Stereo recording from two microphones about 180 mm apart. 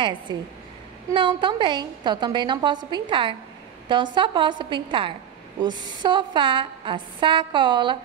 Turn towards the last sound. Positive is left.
turn(degrees=-25)  # may be behind; listen again after turning